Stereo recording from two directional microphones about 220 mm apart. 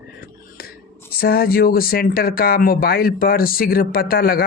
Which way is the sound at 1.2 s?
45° left (ahead or behind).